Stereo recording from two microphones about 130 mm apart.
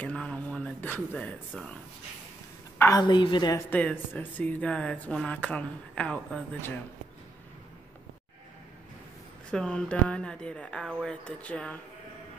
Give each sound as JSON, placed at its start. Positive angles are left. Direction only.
{"t": 0.0, "sound": "a sound", "side_deg": 5}
{"t": 2.8, "sound": "a woman's voice", "side_deg": 30}
{"t": 3.5, "sound": "speech", "side_deg": 15}
{"t": 9.5, "sound": "speech", "side_deg": 5}